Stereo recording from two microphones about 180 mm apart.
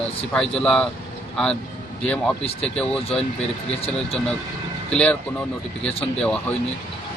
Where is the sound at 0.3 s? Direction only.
5° left (ahead or behind).